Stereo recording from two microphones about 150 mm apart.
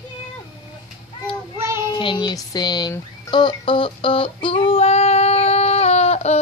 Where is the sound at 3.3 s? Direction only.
30° left (ahead or behind).